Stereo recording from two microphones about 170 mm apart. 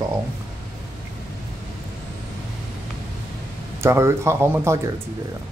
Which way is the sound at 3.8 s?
15° right (ahead or behind).